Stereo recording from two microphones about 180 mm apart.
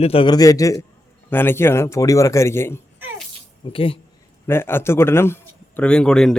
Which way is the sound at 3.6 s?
30° left (ahead or behind).